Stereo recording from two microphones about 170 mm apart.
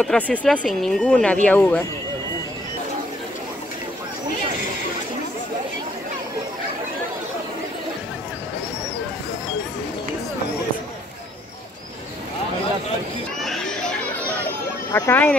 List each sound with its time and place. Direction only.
0.0 s speech: 5° left (ahead or behind)
13.4 s chatter: centre (ahead or behind)
14.9 s speech: 15° left (ahead or behind)